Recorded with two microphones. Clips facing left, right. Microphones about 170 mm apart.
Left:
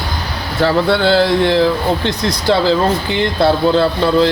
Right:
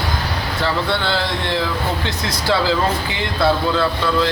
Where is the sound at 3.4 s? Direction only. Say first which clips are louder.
Left 4 dB; 30° left (ahead or behind).